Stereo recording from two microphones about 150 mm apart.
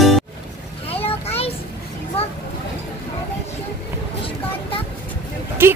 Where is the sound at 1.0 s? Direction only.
40° left (ahead or behind).